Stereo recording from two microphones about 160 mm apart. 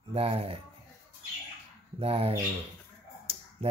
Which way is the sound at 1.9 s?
35° right (ahead or behind).